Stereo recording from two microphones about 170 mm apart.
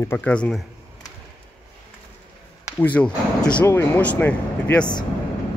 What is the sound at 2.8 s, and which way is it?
Speech, 10° left (ahead or behind).